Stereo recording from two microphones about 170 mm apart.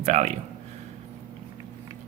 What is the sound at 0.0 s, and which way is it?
Speech, 45° right (ahead or behind).